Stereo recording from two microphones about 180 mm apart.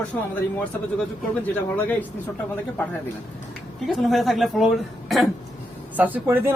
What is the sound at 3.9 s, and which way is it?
A woman's voice, centre (ahead or behind).